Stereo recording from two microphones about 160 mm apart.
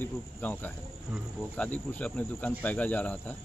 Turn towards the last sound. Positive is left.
turn(degrees=10)  # may be behind; listen again after turning